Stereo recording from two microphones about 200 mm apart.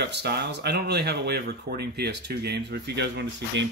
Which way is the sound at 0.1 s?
55° right (ahead or behind).